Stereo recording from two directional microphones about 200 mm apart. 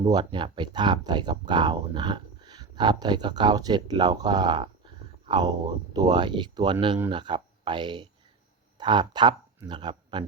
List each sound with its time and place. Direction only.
0.0 s speech: 25° right (ahead or behind)